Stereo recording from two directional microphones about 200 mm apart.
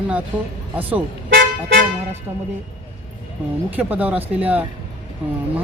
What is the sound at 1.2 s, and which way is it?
Toot, 45° right (ahead or behind).